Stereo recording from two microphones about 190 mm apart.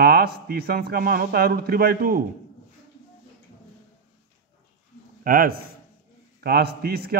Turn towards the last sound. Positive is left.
turn(degrees=-55)  # may be behind; listen again after turning